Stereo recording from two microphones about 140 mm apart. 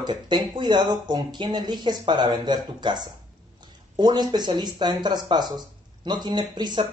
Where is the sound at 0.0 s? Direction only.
35° right (ahead or behind).